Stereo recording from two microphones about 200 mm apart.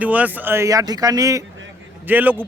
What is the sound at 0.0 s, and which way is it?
Speech, 10° right (ahead or behind).